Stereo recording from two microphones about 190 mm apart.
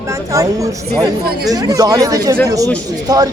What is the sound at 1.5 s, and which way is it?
Speech, 20° right (ahead or behind).